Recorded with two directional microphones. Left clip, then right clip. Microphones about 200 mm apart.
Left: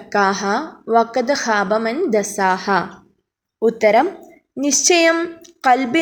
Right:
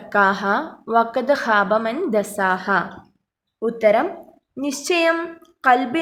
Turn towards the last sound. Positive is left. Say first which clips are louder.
# left 2 dB
turn(degrees=20)  # may be behind; listen again after turning